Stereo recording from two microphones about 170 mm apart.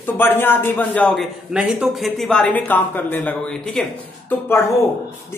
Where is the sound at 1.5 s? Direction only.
5° right (ahead or behind).